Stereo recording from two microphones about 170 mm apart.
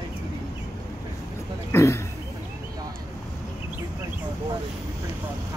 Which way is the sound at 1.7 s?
15° left (ahead or behind).